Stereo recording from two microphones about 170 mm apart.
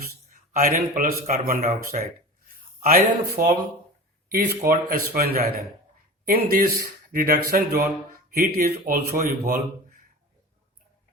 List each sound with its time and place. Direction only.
0.6 s a man's voice: 50° right (ahead or behind)